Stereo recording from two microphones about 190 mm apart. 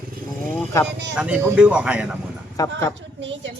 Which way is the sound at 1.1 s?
5° right (ahead or behind).